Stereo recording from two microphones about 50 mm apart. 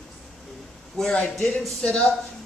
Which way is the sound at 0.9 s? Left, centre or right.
Centre.